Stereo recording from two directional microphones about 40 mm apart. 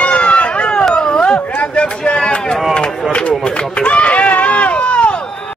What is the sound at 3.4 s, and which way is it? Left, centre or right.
Run, left.